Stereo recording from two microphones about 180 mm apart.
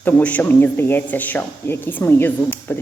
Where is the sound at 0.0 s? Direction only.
10° left (ahead or behind).